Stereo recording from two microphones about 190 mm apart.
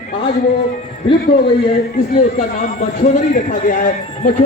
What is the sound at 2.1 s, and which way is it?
A man's voice, 40° left (ahead or behind).